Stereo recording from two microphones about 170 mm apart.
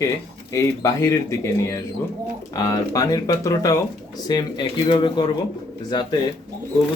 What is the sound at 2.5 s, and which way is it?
A man's voice, 20° left (ahead or behind).